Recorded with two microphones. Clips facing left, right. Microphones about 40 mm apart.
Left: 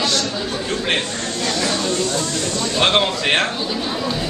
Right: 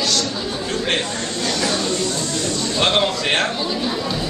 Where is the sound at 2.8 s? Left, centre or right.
Centre.